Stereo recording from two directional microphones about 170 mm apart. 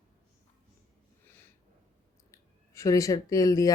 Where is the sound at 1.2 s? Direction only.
10° left (ahead or behind).